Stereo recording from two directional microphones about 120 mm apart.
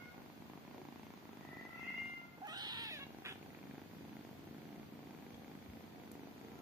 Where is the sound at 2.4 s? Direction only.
35° right (ahead or behind).